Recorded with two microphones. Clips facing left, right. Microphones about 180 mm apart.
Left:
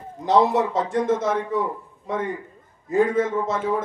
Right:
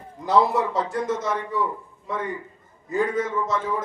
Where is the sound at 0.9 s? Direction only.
55° left (ahead or behind).